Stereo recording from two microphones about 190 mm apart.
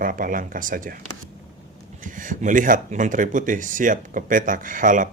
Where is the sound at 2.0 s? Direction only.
45° right (ahead or behind).